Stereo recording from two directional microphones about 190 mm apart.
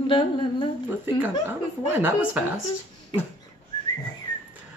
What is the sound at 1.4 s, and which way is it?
Speech, 10° right (ahead or behind).